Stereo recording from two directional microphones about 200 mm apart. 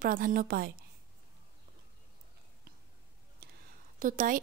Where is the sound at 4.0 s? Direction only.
40° right (ahead or behind).